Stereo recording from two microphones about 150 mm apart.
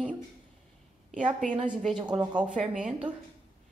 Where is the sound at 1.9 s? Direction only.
30° right (ahead or behind).